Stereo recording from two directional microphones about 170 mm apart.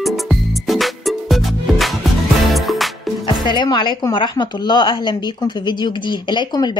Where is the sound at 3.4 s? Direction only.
25° left (ahead or behind).